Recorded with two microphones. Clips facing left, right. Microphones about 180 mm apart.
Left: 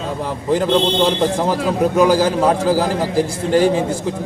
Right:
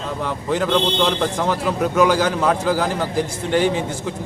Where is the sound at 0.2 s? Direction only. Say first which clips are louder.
Left 3 dB; 35° left (ahead or behind).